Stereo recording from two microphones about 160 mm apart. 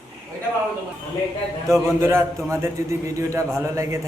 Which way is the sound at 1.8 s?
15° right (ahead or behind).